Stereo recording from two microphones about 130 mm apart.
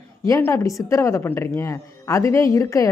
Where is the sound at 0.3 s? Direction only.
25° left (ahead or behind).